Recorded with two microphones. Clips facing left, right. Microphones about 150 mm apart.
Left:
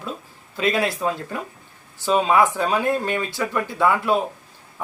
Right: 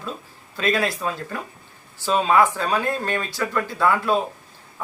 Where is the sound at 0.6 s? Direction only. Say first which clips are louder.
Left 1 dB; 20° left (ahead or behind).